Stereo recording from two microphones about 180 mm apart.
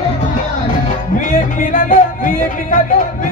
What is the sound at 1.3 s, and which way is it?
Music, 50° left (ahead or behind).